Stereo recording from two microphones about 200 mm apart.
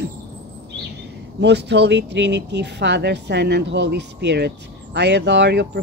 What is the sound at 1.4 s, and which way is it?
Speech, 60° right (ahead or behind).